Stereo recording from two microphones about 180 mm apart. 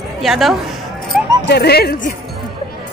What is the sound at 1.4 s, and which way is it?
Speech, 65° left (ahead or behind).